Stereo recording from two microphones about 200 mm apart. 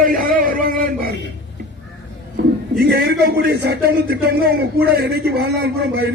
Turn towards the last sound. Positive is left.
turn(degrees=-55)  # may be behind; listen again after turning